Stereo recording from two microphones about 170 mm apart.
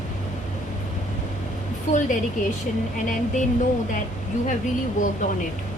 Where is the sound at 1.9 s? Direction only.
45° left (ahead or behind).